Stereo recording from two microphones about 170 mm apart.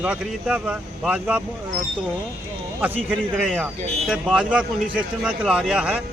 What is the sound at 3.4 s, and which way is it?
A man's voice, 5° right (ahead or behind).